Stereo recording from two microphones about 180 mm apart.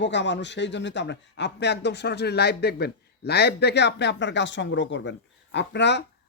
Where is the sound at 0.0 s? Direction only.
80° left.